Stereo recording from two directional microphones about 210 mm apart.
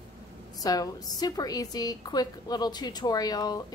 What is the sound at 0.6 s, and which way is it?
A woman's voice, 15° left (ahead or behind).